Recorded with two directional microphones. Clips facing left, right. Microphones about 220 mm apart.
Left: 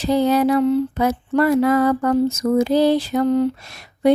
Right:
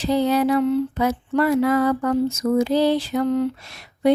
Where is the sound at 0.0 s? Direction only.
45° left (ahead or behind).